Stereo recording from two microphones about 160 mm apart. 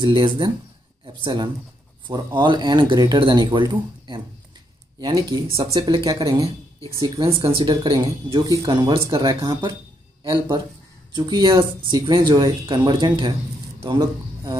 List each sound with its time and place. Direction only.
0.0 s speech: 30° right (ahead or behind)
5.0 s speech: 25° right (ahead or behind)
11.1 s a man's voice: 30° right (ahead or behind)